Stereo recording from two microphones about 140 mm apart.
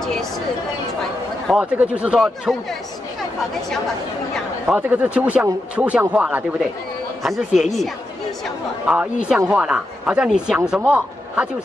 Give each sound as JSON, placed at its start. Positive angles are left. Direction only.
{"t": 0.0, "sound": "a sound", "side_deg": 5}
{"t": 1.5, "sound": "speech", "side_deg": -10}
{"t": 4.7, "sound": "speech", "side_deg": -15}
{"t": 8.8, "sound": "speech", "side_deg": -10}